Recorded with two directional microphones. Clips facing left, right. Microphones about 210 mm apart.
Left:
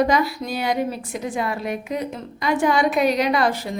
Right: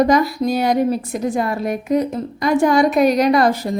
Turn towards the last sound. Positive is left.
turn(degrees=-40)  # may be behind; listen again after turning